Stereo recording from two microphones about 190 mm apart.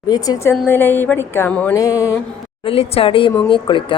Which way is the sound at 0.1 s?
20° left (ahead or behind).